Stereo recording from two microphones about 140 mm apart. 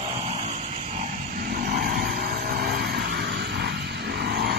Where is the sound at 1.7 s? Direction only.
90° right.